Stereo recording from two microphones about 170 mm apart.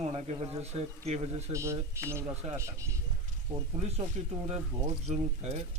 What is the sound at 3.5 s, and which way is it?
Speech, 45° right (ahead or behind).